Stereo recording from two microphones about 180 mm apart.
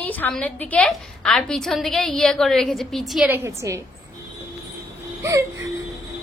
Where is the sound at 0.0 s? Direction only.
10° left (ahead or behind).